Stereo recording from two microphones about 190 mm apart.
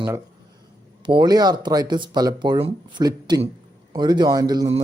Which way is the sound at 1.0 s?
25° right (ahead or behind).